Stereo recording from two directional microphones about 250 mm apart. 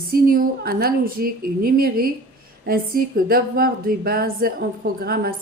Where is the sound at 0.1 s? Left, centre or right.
Right.